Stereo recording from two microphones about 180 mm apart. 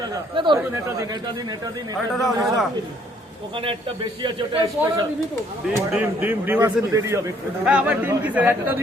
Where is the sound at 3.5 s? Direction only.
30° right (ahead or behind).